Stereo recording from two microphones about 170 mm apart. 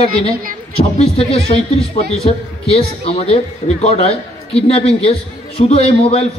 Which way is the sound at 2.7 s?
35° left (ahead or behind).